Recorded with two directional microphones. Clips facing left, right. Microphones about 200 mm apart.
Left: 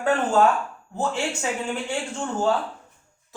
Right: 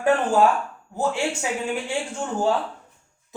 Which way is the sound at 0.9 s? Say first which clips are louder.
Right 2 dB; 10° right (ahead or behind).